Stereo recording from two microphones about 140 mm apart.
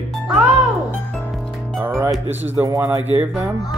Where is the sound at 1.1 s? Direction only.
Centre (ahead or behind).